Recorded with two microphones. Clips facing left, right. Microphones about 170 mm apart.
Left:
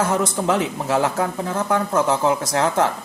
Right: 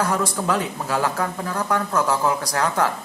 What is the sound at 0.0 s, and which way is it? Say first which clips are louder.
A man's voice: left 2 dB; 25° left (ahead or behind).